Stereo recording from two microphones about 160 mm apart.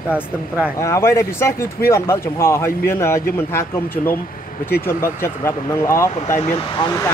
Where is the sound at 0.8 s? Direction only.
15° left (ahead or behind).